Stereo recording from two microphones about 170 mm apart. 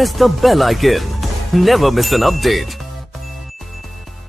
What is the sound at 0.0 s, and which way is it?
Music, centre (ahead or behind).